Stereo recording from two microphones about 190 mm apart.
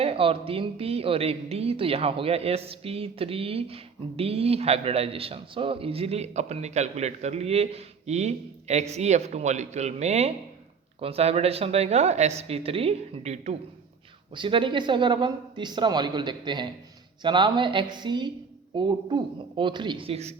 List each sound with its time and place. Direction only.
0.0 s a man's voice: 30° right (ahead or behind)